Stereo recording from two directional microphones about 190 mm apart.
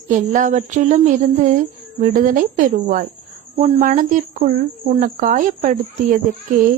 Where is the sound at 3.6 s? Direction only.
30° right (ahead or behind).